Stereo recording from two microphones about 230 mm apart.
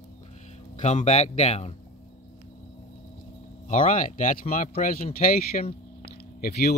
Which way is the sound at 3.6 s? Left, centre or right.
Left.